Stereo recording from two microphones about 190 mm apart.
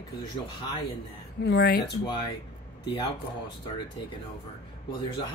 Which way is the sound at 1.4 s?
60° left (ahead or behind).